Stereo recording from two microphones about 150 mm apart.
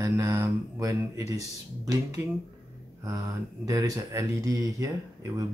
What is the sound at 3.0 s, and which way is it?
Speech, 20° right (ahead or behind).